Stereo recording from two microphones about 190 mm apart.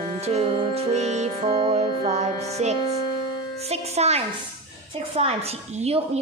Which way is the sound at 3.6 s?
35° right (ahead or behind).